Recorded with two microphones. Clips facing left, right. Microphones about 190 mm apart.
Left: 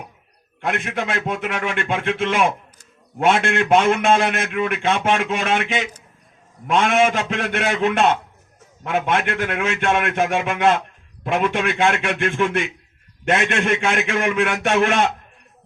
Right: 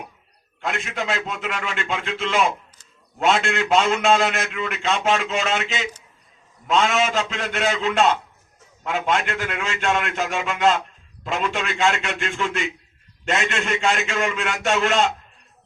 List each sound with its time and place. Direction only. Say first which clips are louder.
0.6 s a man's voice: left 3 dB; 55° left (ahead or behind)